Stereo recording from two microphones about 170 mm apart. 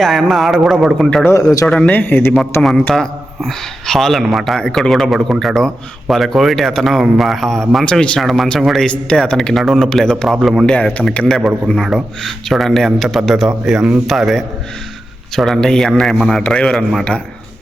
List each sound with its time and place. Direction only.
0.0 s a man's voice: centre (ahead or behind)
1.3 s speech: 20° left (ahead or behind)
1.6 s a man's voice: 5° left (ahead or behind)